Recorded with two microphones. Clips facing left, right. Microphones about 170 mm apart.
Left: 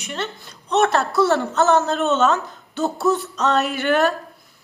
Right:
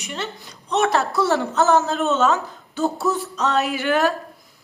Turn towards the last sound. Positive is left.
turn(degrees=-10)  # may be behind; listen again after turning